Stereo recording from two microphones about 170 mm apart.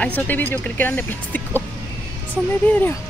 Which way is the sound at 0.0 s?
10° left (ahead or behind).